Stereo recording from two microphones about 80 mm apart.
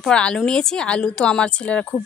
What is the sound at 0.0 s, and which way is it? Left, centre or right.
A woman's voice, centre.